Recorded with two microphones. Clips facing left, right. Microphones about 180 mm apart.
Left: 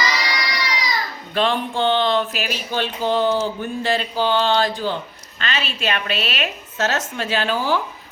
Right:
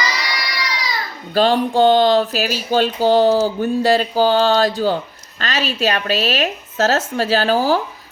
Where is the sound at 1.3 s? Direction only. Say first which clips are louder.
Right 6 dB; 35° right (ahead or behind).